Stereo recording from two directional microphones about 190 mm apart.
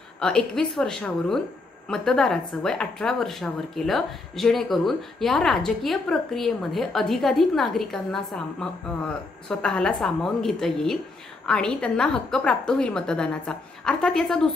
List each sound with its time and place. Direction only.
0.2 s a woman's voice: 5° left (ahead or behind)